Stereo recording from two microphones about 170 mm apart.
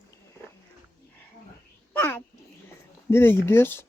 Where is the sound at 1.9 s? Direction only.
10° left (ahead or behind).